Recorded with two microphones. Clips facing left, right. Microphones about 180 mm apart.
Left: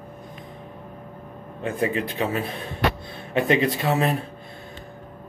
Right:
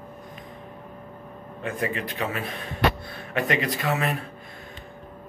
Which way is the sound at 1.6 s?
30° left (ahead or behind).